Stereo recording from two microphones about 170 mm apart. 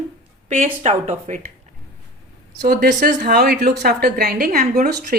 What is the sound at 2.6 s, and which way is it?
A woman's voice, 55° right (ahead or behind).